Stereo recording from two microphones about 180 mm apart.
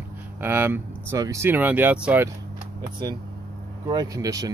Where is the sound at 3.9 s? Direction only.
20° right (ahead or behind).